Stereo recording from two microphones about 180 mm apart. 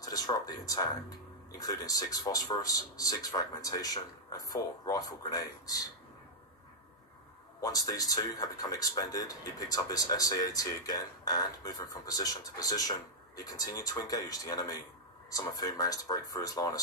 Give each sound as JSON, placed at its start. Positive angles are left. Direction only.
{"t": 0.0, "sound": "speech", "side_deg": 20}
{"t": 7.6, "sound": "speech", "side_deg": 20}